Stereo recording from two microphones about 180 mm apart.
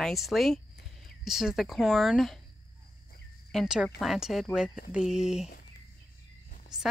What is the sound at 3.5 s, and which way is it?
A woman's voice, 5° right (ahead or behind).